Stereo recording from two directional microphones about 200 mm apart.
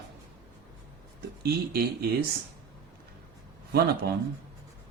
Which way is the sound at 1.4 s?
50° right (ahead or behind).